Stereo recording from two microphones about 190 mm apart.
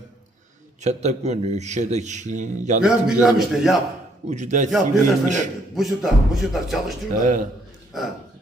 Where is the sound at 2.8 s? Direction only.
5° right (ahead or behind).